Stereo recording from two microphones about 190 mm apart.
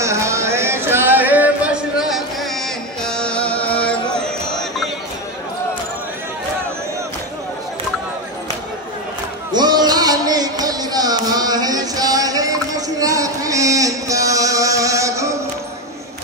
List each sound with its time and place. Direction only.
0.0 s music: 15° right (ahead or behind); by 4.8 s 5° left (ahead or behind)
9.5 s music: 20° right (ahead or behind)